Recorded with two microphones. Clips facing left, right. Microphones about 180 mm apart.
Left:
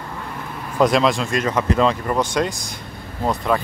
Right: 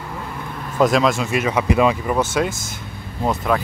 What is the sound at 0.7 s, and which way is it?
Speech, centre (ahead or behind).